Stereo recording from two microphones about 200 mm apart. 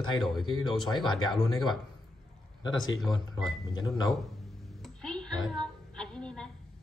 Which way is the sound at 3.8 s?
20° left (ahead or behind).